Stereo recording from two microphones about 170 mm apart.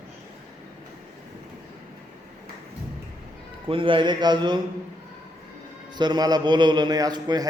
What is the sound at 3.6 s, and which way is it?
Speech, 30° right (ahead or behind).